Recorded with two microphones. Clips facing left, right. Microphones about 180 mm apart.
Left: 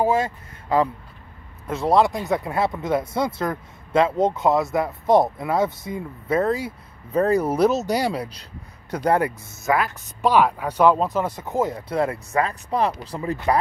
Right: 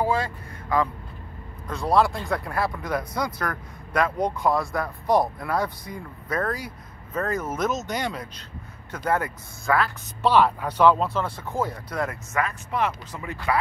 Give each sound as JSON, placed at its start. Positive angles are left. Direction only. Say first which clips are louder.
{"t": 0.0, "sound": "vehicle", "louder": "left 4 dB", "side_deg": 25}
{"t": 2.0, "sound": "speech", "louder": "left 1 dB", "side_deg": 20}
{"t": 9.2, "sound": "speech", "louder": "left 7 dB", "side_deg": 15}
{"t": 11.2, "sound": "speech", "louder": "left 4 dB", "side_deg": 20}